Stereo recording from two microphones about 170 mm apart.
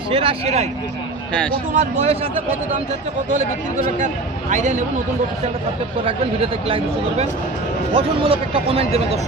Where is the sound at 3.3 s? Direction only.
50° right (ahead or behind).